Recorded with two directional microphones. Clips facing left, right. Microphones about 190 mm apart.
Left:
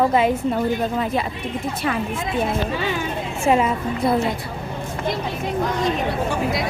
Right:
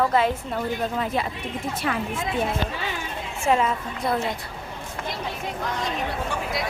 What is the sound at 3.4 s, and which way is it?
Speech, 10° left (ahead or behind).